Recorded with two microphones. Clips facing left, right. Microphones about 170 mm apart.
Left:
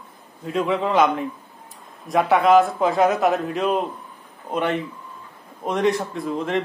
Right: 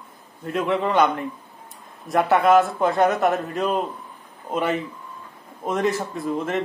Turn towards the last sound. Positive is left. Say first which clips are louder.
# left 1 dB
turn(degrees=0)  # may be behind; listen again after turning